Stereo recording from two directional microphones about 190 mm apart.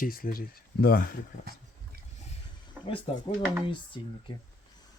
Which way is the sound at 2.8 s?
10° right (ahead or behind).